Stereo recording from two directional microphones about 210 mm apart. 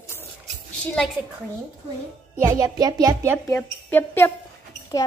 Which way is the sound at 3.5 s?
10° left (ahead or behind).